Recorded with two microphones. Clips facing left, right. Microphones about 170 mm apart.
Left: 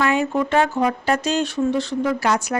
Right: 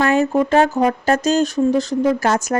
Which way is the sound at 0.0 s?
40° right (ahead or behind).